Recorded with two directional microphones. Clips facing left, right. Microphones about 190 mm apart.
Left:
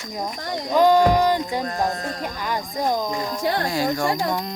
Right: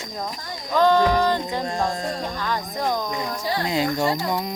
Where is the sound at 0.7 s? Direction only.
10° left (ahead or behind).